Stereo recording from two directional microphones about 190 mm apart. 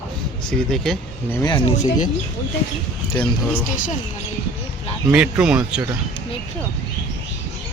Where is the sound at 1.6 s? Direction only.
40° left (ahead or behind).